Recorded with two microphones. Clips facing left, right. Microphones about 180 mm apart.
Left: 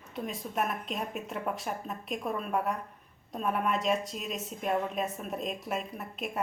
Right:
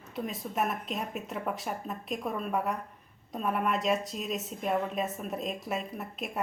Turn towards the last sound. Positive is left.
turn(degrees=0)  # may be behind; listen again after turning